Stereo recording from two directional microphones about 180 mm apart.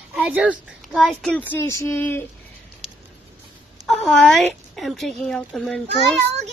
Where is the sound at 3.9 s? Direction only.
Centre (ahead or behind).